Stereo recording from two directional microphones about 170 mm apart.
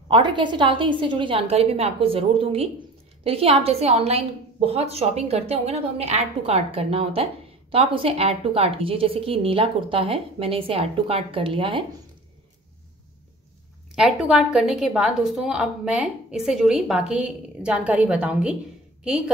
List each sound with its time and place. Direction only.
0.1 s a woman's voice: 30° right (ahead or behind)
13.9 s a woman's voice: 5° right (ahead or behind)